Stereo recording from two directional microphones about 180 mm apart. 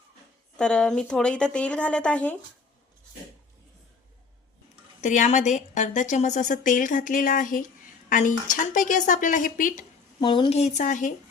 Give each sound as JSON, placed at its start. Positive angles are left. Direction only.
{"t": 0.5, "sound": "a woman's voice", "side_deg": 5}
{"t": 4.9, "sound": "a woman's voice", "side_deg": 45}
{"t": 10.2, "sound": "speech", "side_deg": 25}